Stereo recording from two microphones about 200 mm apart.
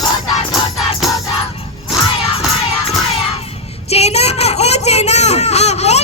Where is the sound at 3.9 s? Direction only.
30° left (ahead or behind).